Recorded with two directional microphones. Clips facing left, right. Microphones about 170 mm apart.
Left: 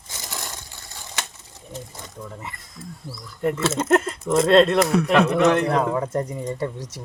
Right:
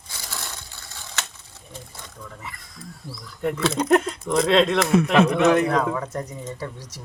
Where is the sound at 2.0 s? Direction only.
20° left (ahead or behind).